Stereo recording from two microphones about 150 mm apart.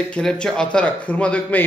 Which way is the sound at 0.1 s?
5° left (ahead or behind).